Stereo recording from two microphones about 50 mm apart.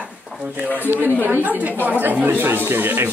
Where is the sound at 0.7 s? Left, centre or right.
Right.